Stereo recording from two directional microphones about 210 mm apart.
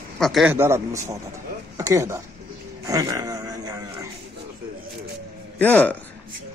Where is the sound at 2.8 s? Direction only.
15° right (ahead or behind).